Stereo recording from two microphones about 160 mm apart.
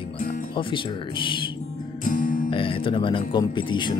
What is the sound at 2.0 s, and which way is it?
Music, 60° left (ahead or behind).